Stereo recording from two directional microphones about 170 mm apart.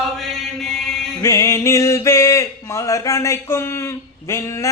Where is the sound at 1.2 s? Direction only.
15° left (ahead or behind).